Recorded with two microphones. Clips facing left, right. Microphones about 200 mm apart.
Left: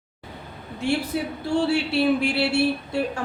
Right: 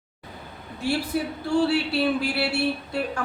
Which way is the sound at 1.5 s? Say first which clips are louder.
Even; 25° left (ahead or behind).